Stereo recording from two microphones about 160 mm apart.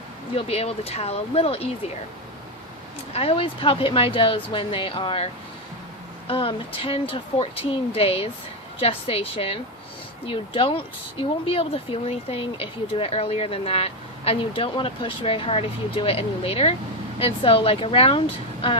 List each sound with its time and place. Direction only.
0.3 s speech: 40° left (ahead or behind)
3.1 s speech: 40° left (ahead or behind)